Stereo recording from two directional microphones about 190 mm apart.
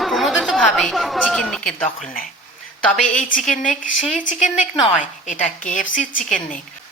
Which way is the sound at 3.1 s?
45° left (ahead or behind).